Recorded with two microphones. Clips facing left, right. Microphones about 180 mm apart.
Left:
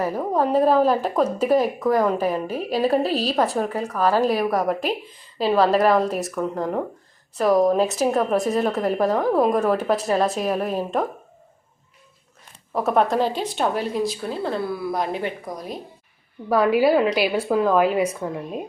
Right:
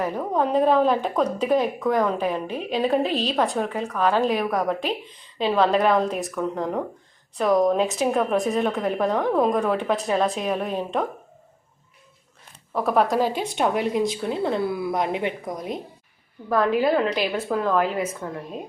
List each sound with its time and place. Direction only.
0.0 s a woman's voice: 10° left (ahead or behind)
12.7 s a woman's voice: centre (ahead or behind); by 15.8 s 20° right (ahead or behind)
16.5 s a woman's voice: 10° left (ahead or behind)